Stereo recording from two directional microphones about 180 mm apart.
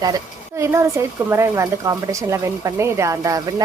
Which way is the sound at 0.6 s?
15° right (ahead or behind).